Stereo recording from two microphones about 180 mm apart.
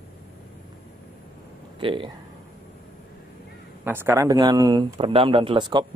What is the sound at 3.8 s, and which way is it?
Speech, 10° right (ahead or behind).